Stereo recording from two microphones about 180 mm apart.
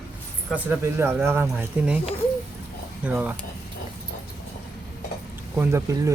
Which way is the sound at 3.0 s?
10° right (ahead or behind).